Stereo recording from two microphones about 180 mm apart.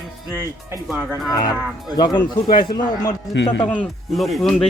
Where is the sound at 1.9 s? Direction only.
25° left (ahead or behind).